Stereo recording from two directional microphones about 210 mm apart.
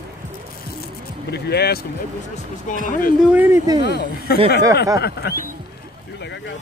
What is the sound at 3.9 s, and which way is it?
Speech, 50° left (ahead or behind).